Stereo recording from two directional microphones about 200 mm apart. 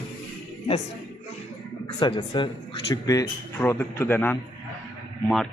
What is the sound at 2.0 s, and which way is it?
A man's voice, 25° left (ahead or behind).